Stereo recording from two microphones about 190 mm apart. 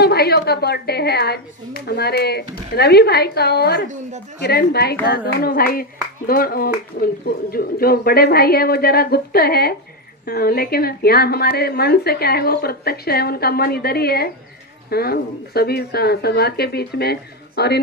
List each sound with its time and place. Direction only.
0.0 s a woman's voice: 55° left (ahead or behind)